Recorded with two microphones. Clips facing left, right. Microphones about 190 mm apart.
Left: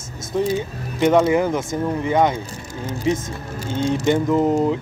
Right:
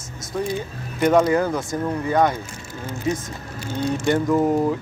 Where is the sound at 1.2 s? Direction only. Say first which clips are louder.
Left 2 dB; 20° left (ahead or behind).